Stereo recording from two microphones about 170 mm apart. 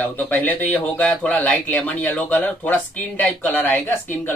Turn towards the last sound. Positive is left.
turn(degrees=10)  # may be behind; listen again after turning